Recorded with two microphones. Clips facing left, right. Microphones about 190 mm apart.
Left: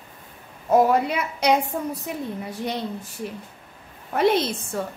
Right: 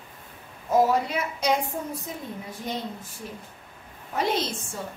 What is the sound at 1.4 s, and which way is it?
Speech, 70° left (ahead or behind).